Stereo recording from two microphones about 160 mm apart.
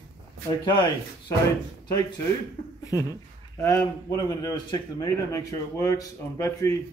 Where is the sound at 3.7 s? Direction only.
20° left (ahead or behind).